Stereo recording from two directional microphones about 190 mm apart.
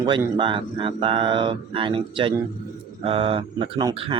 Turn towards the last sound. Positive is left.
turn(degrees=-25)  # may be behind; listen again after turning